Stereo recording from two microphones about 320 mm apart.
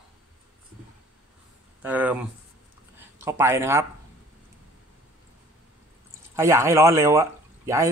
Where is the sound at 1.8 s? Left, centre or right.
Centre.